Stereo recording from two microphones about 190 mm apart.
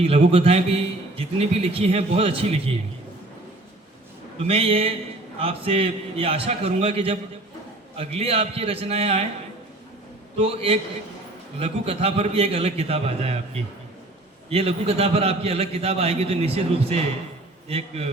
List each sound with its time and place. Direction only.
0.3 s a man's voice: 30° right (ahead or behind)
4.4 s a man's voice: 30° right (ahead or behind)
10.3 s a man's voice: 30° right (ahead or behind)